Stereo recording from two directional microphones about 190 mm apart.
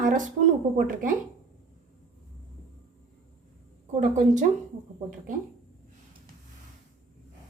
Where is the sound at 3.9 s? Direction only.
40° right (ahead or behind).